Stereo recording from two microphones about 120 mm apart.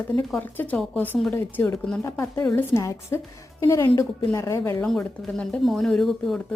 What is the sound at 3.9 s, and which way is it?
Speech, 30° left (ahead or behind).